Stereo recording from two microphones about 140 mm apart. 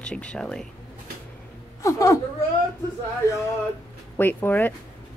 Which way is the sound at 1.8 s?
20° left (ahead or behind).